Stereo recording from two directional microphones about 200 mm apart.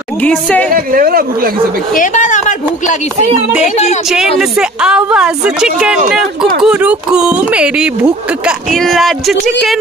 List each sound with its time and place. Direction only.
0.2 s speech: 5° left (ahead or behind)
0.7 s speech: 45° right (ahead or behind)
2.0 s speech: 40° left (ahead or behind)
4.4 s speech: 5° right (ahead or behind)